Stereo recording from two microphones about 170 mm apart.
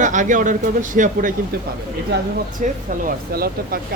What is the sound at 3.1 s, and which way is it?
Speech, 60° right (ahead or behind).